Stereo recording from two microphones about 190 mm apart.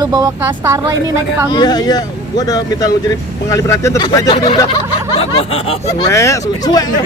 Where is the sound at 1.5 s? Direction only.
20° left (ahead or behind).